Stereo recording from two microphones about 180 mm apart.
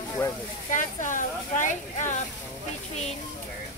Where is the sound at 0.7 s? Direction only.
45° left (ahead or behind).